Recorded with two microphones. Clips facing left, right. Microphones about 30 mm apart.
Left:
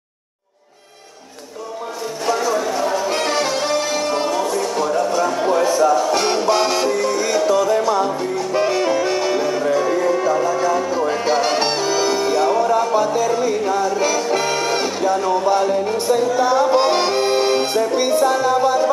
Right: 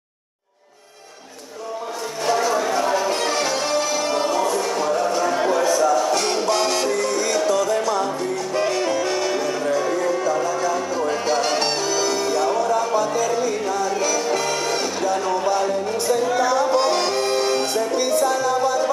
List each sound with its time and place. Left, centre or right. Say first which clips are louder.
2.2 s music: left 1 dB; centre
3.1 s music: left 2 dB; left
4.1 s music: left 1 dB; centre
5.6 s music: left 4 dB; left